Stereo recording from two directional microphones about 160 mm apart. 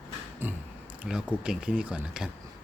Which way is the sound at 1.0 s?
5° right (ahead or behind).